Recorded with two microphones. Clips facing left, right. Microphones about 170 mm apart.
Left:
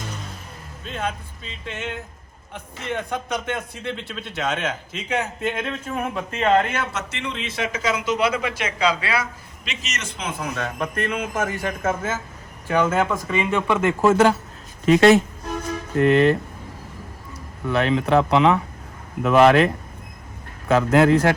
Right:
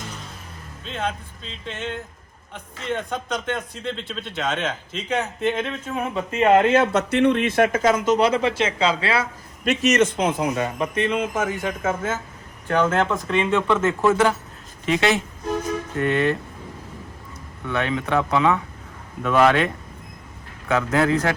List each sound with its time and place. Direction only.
0.9 s a man's voice: 5° left (ahead or behind)
6.4 s a man's voice: 15° right (ahead or behind)
6.7 s a man's voice: 55° right (ahead or behind); by 9.2 s 25° right (ahead or behind)
9.6 s a man's voice: 60° right (ahead or behind)
10.4 s a man's voice: 15° right (ahead or behind)
10.8 s a man's voice: centre (ahead or behind)
14.0 s speech: 40° left (ahead or behind)
17.7 s speech: 30° left (ahead or behind)
20.7 s speech: 20° left (ahead or behind)